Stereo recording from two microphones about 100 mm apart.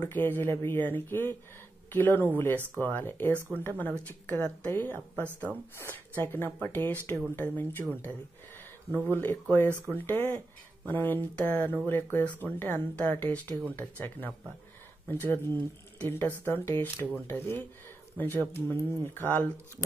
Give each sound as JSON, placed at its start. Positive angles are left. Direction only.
{"t": 0.1, "sound": "speech", "side_deg": 20}